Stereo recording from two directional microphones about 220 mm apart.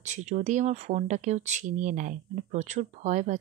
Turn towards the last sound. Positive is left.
turn(degrees=-35)  # may be behind; listen again after turning